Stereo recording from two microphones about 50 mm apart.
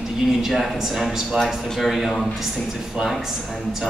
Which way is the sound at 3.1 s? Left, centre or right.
Centre.